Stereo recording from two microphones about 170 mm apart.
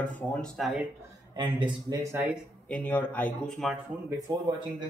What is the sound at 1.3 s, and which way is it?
Speech, 25° right (ahead or behind).